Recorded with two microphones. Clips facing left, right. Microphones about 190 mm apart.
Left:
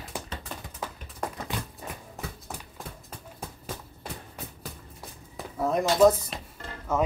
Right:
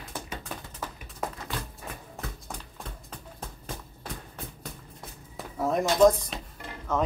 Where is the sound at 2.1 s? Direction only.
5° left (ahead or behind).